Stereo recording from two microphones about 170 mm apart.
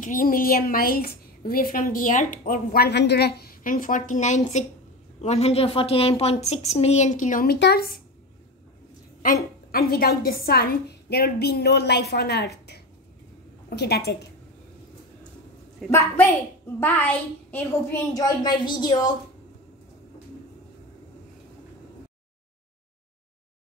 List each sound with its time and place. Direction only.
0.0 s a woman's voice: 55° left (ahead or behind)
7.5 s a woman's voice: 75° left (ahead or behind)
9.7 s a woman's voice: 60° left (ahead or behind)
15.8 s a woman's voice: centre (ahead or behind); by 19.1 s 25° left (ahead or behind)